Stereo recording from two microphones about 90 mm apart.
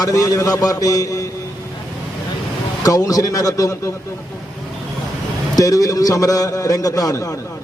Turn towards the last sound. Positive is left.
turn(degrees=40)  # may be behind; listen again after turning